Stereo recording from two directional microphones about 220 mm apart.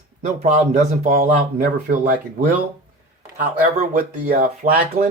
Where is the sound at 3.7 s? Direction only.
35° right (ahead or behind).